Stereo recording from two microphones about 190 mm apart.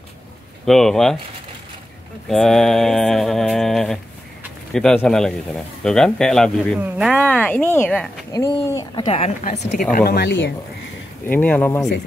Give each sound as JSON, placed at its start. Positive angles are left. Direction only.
{"t": 0.7, "sound": "mantra", "side_deg": 0}
{"t": 2.2, "sound": "mantra", "side_deg": 0}
{"t": 8.3, "sound": "speech", "side_deg": 15}
{"t": 8.9, "sound": "speech", "side_deg": 30}
{"t": 11.2, "sound": "speech", "side_deg": 10}